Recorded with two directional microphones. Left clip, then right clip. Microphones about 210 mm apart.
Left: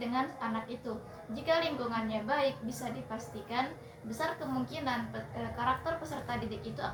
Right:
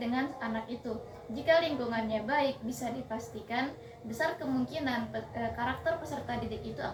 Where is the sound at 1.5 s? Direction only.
20° left (ahead or behind).